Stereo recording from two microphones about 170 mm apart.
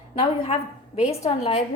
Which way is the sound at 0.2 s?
35° left (ahead or behind).